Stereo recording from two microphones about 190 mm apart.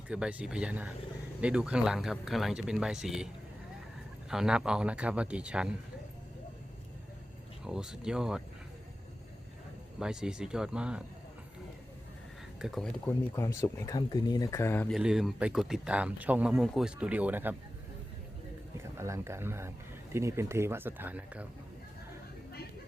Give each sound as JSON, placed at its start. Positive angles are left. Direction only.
{"t": 0.1, "sound": "speech", "side_deg": -5}
{"t": 4.3, "sound": "speech", "side_deg": -5}
{"t": 7.6, "sound": "speech", "side_deg": -5}
{"t": 10.0, "sound": "speech", "side_deg": -5}
{"t": 12.5, "sound": "speech", "side_deg": 0}
{"t": 13.3, "sound": "speech", "side_deg": 15}
{"t": 14.9, "sound": "speech", "side_deg": -5}
{"t": 18.8, "sound": "speech", "side_deg": -15}